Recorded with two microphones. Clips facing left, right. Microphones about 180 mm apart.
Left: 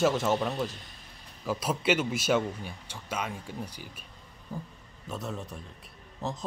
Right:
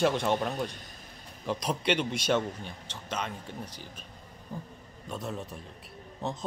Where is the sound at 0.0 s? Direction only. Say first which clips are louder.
Left 1 dB; centre (ahead or behind).